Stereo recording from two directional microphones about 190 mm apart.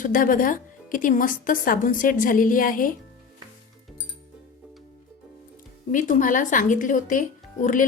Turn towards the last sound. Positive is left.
turn(degrees=45)  # may be behind; listen again after turning